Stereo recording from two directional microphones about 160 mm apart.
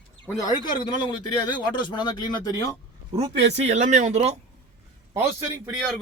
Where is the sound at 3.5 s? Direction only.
45° right (ahead or behind).